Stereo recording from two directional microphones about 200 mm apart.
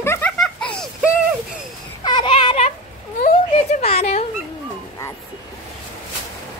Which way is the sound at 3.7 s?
30° left (ahead or behind).